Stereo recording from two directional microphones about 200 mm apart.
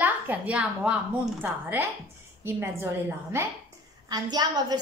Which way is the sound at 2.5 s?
10° right (ahead or behind).